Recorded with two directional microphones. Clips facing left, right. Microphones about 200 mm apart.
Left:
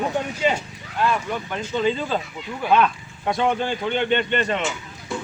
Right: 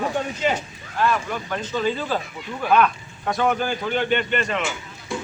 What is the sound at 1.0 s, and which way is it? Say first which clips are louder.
Speech: even; 15° left (ahead or behind).